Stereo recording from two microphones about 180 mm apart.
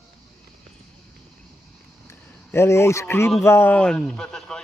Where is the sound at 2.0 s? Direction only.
15° left (ahead or behind).